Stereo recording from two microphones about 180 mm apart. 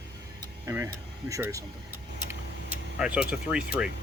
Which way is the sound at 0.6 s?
15° right (ahead or behind).